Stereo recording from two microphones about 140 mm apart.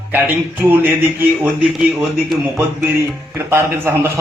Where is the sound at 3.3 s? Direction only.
15° right (ahead or behind).